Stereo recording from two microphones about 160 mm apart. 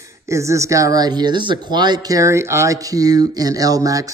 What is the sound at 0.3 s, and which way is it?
Speech, 20° right (ahead or behind).